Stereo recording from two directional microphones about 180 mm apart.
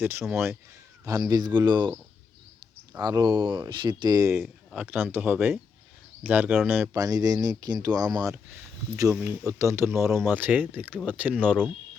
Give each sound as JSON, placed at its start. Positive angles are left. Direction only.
{"t": 0.0, "sound": "speech", "side_deg": -15}
{"t": 3.0, "sound": "speech", "side_deg": -20}